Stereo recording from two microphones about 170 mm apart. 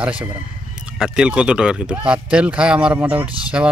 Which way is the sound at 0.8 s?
5° right (ahead or behind).